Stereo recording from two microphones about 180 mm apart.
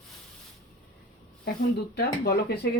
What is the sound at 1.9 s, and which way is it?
Speech, 60° left (ahead or behind).